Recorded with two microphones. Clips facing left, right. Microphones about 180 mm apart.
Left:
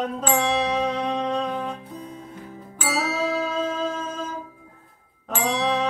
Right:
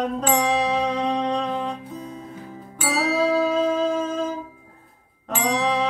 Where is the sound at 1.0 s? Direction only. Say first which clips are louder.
Right 2 dB; centre (ahead or behind).